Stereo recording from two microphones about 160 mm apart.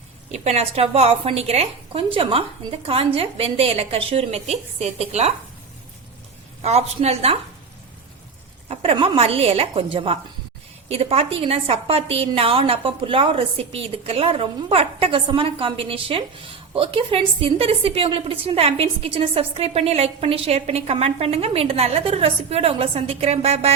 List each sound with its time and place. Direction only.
0.4 s a woman's voice: 40° right (ahead or behind)
6.6 s a woman's voice: 40° right (ahead or behind)
8.7 s a woman's voice: 35° right (ahead or behind)